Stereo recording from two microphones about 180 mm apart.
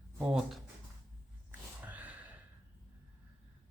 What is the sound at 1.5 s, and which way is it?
Gasp, 10° right (ahead or behind).